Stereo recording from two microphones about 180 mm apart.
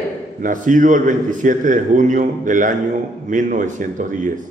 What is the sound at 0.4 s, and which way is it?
A man's voice, 45° right (ahead or behind).